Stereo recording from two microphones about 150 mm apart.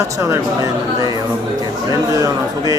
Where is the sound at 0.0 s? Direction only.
20° right (ahead or behind).